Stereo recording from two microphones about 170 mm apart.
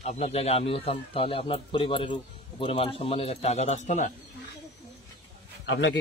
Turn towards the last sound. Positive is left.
turn(degrees=90)